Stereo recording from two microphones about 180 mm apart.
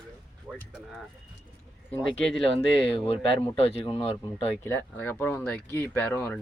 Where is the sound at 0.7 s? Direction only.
Centre (ahead or behind).